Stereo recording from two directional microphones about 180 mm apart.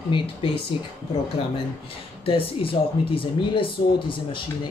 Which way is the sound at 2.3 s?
30° left (ahead or behind).